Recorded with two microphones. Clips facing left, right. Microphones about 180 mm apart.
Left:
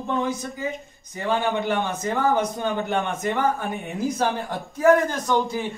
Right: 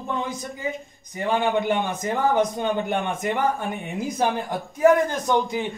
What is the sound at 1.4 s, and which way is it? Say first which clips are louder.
Speech: right 3 dB; 15° right (ahead or behind).